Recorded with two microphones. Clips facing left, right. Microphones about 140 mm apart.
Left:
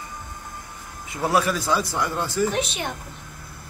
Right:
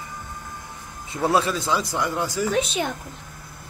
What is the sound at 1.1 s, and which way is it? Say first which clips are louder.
Speech: right 1 dB; 25° right (ahead or behind).